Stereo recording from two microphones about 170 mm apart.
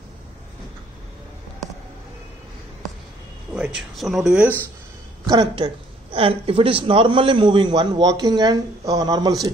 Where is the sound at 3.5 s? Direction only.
5° right (ahead or behind).